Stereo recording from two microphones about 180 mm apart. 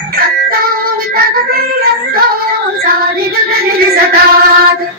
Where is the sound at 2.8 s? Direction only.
55° right (ahead or behind).